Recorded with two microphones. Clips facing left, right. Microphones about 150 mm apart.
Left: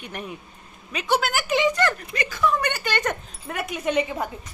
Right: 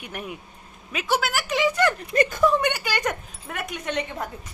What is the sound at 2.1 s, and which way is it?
Speech, 50° right (ahead or behind).